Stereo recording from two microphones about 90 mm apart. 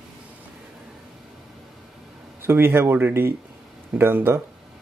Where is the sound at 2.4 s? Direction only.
25° right (ahead or behind).